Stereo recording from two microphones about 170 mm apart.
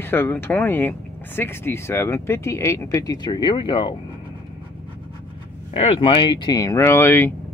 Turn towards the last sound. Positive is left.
turn(degrees=10)  # may be behind; listen again after turning